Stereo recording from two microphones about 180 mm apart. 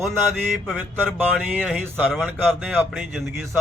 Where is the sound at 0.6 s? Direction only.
Centre (ahead or behind).